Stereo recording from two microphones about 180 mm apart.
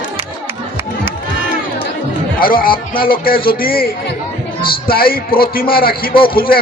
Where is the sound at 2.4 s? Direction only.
55° left (ahead or behind).